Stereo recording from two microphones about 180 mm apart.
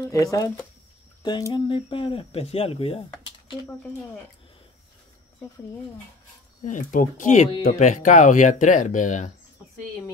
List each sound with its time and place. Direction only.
0.0 s speech: 20° left (ahead or behind)
6.6 s speech: 45° left (ahead or behind)